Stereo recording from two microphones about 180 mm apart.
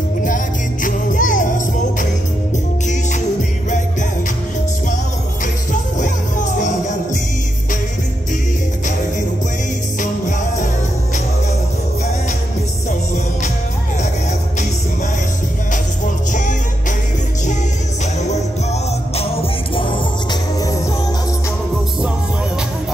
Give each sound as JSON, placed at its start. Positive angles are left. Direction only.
{"t": 0.8, "sound": "music", "side_deg": 45}
{"t": 5.7, "sound": "music", "side_deg": 45}
{"t": 16.3, "sound": "music", "side_deg": 45}
{"t": 18.2, "sound": "music", "side_deg": 40}